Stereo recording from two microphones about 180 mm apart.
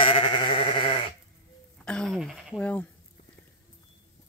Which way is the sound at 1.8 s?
5° left (ahead or behind).